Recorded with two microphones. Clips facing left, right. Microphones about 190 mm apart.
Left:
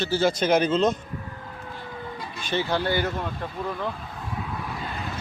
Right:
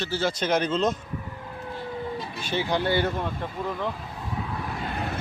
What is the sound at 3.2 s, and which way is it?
Speech, centre (ahead or behind).